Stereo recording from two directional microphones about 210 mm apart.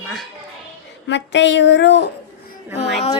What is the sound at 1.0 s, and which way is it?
Speech, 55° left (ahead or behind).